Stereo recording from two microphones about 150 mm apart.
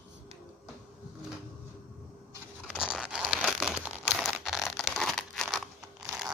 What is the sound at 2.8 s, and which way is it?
Crumpling, 5° right (ahead or behind).